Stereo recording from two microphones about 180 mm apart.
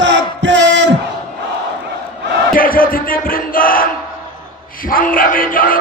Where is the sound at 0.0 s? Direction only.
90° right.